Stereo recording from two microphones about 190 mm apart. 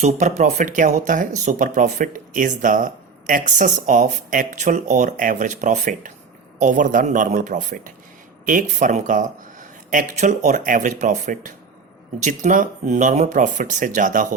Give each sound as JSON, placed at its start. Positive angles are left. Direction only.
{"t": 0.0, "sound": "speech", "side_deg": -40}